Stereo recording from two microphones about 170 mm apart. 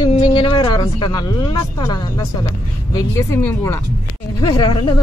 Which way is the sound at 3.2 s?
15° left (ahead or behind).